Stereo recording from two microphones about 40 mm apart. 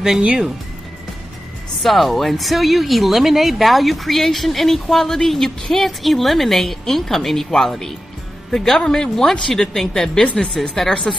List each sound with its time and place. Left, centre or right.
0.2 s speech: right
1.8 s a woman's voice: centre